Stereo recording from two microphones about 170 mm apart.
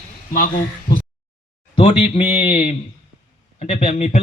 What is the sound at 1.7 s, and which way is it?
A man's voice, 30° left (ahead or behind).